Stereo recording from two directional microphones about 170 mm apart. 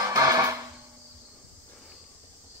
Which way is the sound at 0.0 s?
20° right (ahead or behind).